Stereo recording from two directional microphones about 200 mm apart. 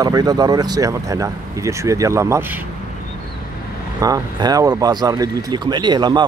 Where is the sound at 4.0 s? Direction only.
20° right (ahead or behind).